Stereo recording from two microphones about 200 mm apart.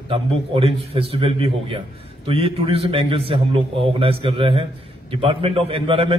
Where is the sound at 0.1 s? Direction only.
30° right (ahead or behind).